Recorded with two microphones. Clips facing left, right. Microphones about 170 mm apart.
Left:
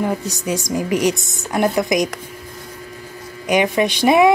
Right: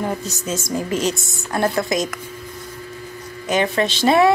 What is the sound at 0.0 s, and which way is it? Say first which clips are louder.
A woman's voice: left 3 dB; 15° left (ahead or behind).